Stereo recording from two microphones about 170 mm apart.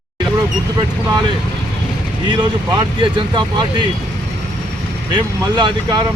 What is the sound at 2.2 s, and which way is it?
Speech, 30° right (ahead or behind).